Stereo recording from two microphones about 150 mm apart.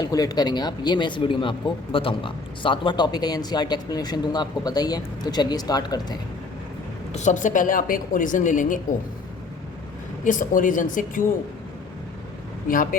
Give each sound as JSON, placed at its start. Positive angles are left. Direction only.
{"t": 0.0, "sound": "speech", "side_deg": 25}
{"t": 7.1, "sound": "a woman's voice", "side_deg": 50}
{"t": 10.2, "sound": "a woman's voice", "side_deg": 60}
{"t": 12.6, "sound": "a woman's voice", "side_deg": 65}